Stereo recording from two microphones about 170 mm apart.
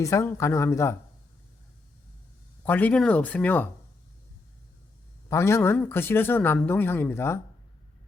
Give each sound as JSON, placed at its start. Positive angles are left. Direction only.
{"t": 0.0, "sound": "speech", "side_deg": 20}
{"t": 2.6, "sound": "speech", "side_deg": 10}
{"t": 5.3, "sound": "speech", "side_deg": 15}